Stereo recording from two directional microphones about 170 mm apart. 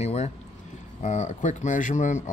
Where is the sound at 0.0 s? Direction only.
40° left (ahead or behind).